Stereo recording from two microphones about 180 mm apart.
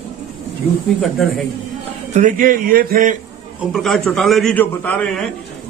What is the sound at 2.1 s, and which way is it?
Speech, 45° right (ahead or behind).